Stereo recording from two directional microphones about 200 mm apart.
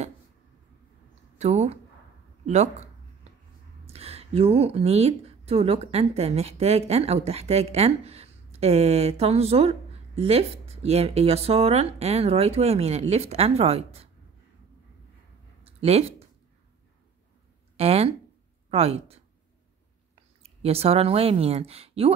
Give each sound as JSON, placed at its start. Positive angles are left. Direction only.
{"t": 1.4, "sound": "speech", "side_deg": -35}
{"t": 15.6, "sound": "a sound", "side_deg": -30}
{"t": 17.7, "sound": "speech", "side_deg": -30}
{"t": 20.4, "sound": "speech", "side_deg": -30}